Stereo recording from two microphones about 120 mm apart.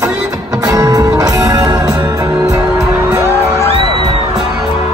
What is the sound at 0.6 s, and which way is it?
Music, 35° right (ahead or behind).